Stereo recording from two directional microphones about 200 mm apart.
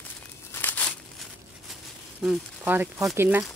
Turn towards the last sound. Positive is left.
turn(degrees=-10)  # may be behind; listen again after turning